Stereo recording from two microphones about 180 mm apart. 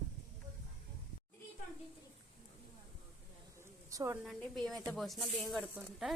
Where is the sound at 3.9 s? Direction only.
15° right (ahead or behind).